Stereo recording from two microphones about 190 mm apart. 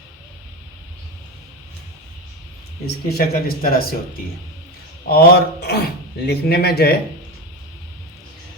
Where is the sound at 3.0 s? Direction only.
55° left (ahead or behind).